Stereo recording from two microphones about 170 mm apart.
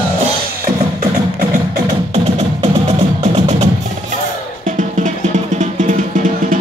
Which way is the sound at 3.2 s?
40° right (ahead or behind).